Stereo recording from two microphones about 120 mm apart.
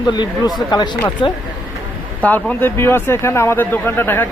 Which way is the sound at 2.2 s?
15° left (ahead or behind).